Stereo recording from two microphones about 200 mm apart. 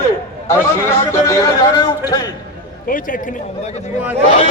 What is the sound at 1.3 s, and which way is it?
Speech, 20° left (ahead or behind).